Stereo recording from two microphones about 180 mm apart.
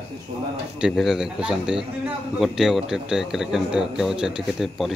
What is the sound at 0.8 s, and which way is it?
Speech, 5° right (ahead or behind).